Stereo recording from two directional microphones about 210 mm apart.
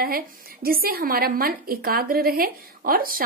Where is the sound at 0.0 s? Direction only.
45° right (ahead or behind).